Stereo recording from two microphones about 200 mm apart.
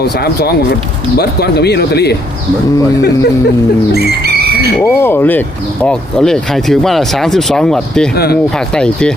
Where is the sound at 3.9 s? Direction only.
55° right (ahead or behind).